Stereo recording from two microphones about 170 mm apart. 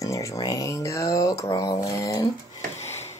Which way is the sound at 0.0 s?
20° left (ahead or behind).